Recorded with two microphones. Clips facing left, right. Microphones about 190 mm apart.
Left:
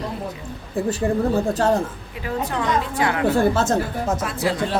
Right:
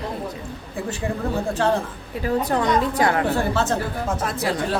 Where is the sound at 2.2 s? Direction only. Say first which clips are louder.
Right 3 dB; 40° right (ahead or behind).